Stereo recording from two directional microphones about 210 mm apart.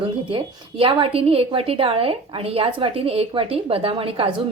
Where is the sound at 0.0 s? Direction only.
25° right (ahead or behind).